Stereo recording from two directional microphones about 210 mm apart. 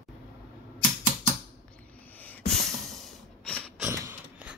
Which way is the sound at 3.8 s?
10° right (ahead or behind).